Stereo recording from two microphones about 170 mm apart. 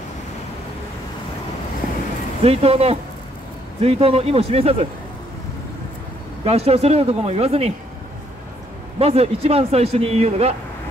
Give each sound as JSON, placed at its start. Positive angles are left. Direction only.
{"t": 2.4, "sound": "speech", "side_deg": -35}
{"t": 6.4, "sound": "speech", "side_deg": -40}
{"t": 9.0, "sound": "speech", "side_deg": -35}